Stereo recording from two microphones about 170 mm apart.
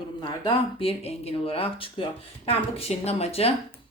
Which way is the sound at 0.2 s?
30° left (ahead or behind).